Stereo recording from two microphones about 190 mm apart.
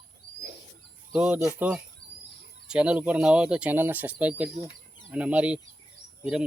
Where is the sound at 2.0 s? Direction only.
60° left (ahead or behind).